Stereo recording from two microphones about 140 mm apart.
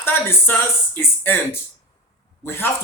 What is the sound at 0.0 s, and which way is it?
Speech, 15° left (ahead or behind).